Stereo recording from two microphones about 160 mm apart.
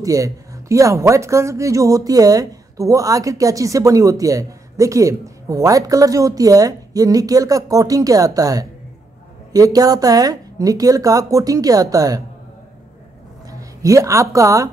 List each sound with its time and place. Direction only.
0.0 s speech: 20° right (ahead or behind)
13.5 s a woman's voice: 20° right (ahead or behind)